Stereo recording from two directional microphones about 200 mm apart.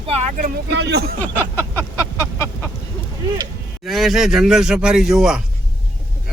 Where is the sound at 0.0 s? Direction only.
30° right (ahead or behind); by 1.1 s 55° right (ahead or behind).